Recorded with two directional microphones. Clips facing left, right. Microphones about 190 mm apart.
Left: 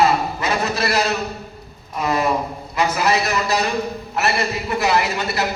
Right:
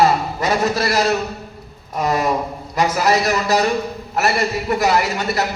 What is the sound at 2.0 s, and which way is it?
A man's voice, 40° right (ahead or behind).